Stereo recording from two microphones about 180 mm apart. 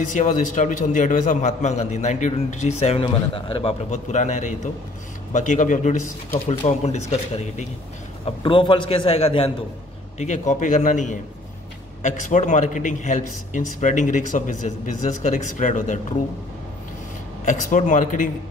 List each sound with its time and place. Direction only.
0.2 s a man's voice: 45° left (ahead or behind)
8.4 s a man's voice: 30° left (ahead or behind); by 14.5 s 45° left (ahead or behind)
15.5 s a man's voice: 45° left (ahead or behind)
17.5 s a man's voice: 45° left (ahead or behind)